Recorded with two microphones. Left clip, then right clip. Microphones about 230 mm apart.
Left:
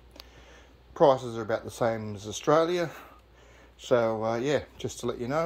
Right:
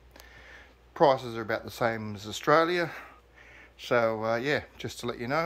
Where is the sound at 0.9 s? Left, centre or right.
Right.